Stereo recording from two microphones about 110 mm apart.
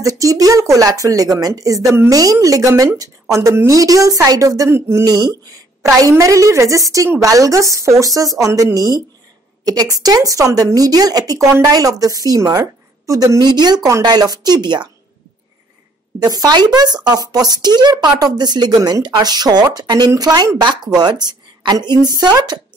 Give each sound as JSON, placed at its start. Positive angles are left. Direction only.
{"t": 0.0, "sound": "a woman's voice", "side_deg": -30}
{"t": 5.0, "sound": "a woman's voice", "side_deg": -35}
{"t": 16.3, "sound": "speech", "side_deg": -35}